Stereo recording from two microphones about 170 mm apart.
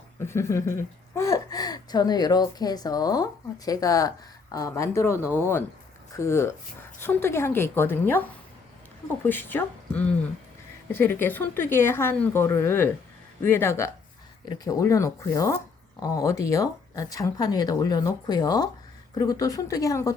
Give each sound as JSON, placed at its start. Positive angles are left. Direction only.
{"t": 0.2, "sound": "speech", "side_deg": 15}
{"t": 9.2, "sound": "speech", "side_deg": 10}